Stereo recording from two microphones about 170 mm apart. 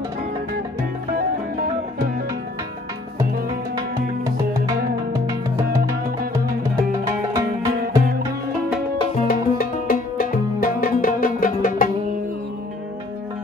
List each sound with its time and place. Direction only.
4.6 s music: 20° right (ahead or behind)
9.1 s music: 55° left (ahead or behind)